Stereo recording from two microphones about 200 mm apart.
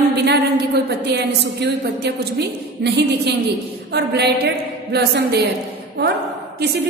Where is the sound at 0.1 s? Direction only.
55° right (ahead or behind).